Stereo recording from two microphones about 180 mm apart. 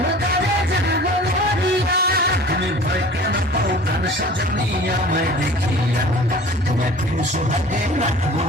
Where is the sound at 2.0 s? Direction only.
60° right (ahead or behind).